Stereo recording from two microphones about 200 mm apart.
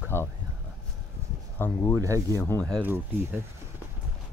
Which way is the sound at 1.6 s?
10° left (ahead or behind).